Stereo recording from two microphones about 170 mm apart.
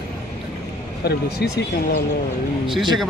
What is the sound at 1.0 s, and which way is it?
Speech, 75° left (ahead or behind).